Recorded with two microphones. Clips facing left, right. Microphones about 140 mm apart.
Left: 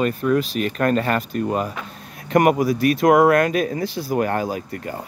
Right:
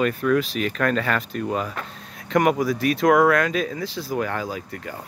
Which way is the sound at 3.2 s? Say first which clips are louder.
Left 3 dB; 50° left (ahead or behind).